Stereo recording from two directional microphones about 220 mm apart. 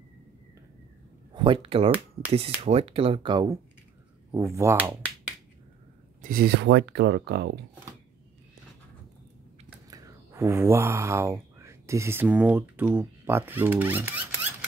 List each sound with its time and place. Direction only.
1.3 s speech: 20° right (ahead or behind)
6.2 s speech: 45° right (ahead or behind)
9.8 s speech: 15° right (ahead or behind)